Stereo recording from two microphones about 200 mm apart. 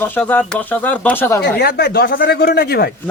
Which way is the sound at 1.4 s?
55° left (ahead or behind).